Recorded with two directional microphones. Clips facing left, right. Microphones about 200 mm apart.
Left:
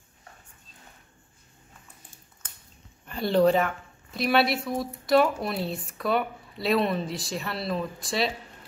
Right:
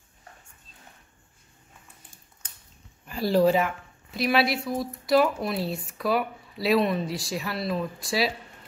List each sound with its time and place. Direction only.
3.1 s speech: centre (ahead or behind)